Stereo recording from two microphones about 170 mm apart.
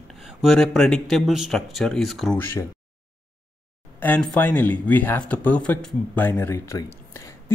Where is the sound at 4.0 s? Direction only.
10° left (ahead or behind).